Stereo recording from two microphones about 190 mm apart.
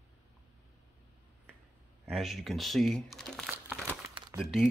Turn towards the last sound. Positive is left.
turn(degrees=-5)  # may be behind; listen again after turning